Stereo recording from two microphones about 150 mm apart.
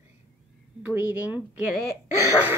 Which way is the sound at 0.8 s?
10° right (ahead or behind).